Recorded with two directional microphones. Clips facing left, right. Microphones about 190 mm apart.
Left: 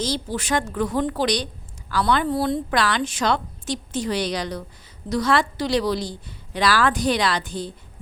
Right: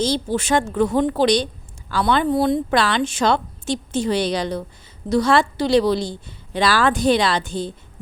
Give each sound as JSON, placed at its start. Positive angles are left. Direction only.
{"t": 0.0, "sound": "a woman's voice", "side_deg": -25}